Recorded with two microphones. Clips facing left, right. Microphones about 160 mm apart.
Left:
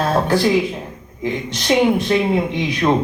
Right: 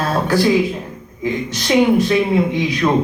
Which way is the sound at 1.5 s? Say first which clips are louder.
Right 1 dB; 25° left (ahead or behind).